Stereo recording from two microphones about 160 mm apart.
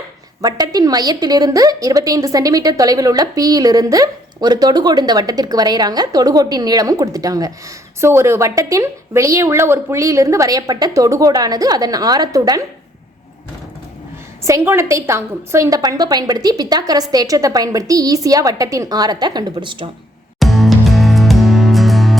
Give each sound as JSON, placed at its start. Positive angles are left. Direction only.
{"t": 0.4, "sound": "a woman's voice", "side_deg": -25}
{"t": 14.4, "sound": "a woman's voice", "side_deg": -15}
{"t": 20.4, "sound": "music", "side_deg": 0}